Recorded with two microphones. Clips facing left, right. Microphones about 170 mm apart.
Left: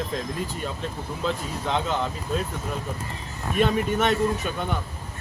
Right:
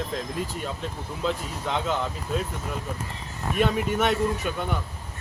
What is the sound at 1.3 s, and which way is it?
Speech, 5° right (ahead or behind).